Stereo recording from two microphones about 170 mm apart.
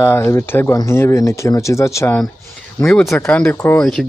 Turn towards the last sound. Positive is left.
turn(degrees=10)  # may be behind; listen again after turning